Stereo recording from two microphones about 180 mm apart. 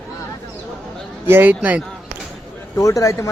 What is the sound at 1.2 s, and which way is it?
Speech, 10° right (ahead or behind).